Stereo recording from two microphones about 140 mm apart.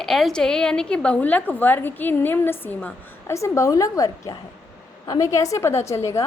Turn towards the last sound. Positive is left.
turn(degrees=20)  # may be behind; listen again after turning